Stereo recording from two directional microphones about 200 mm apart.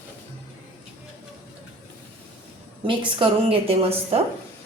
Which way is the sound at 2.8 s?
25° right (ahead or behind).